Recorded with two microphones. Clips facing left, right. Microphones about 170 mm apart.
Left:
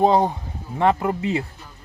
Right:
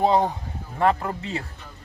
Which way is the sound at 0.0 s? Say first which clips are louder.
Left 3 dB; 20° left (ahead or behind).